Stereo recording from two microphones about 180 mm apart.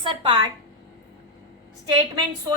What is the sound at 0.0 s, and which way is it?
Speech, 30° right (ahead or behind).